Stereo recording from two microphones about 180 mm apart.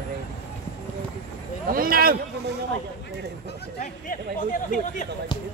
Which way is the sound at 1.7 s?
55° right (ahead or behind).